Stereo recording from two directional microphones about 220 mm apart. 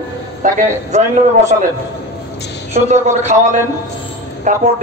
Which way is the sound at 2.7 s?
30° right (ahead or behind).